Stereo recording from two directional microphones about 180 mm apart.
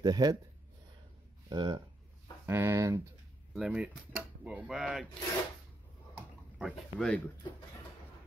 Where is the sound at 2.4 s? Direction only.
15° right (ahead or behind).